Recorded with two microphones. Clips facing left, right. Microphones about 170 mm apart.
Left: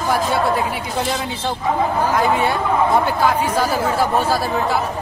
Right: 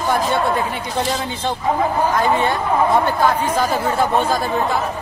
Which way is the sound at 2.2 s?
10° left (ahead or behind).